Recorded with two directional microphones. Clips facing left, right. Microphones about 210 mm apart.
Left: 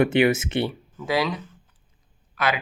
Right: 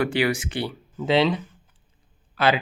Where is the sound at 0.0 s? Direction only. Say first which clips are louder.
Left 4 dB; 20° left (ahead or behind).